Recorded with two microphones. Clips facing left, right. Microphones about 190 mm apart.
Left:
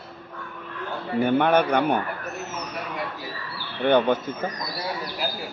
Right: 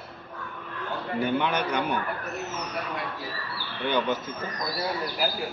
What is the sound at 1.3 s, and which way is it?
Speech, 55° left (ahead or behind).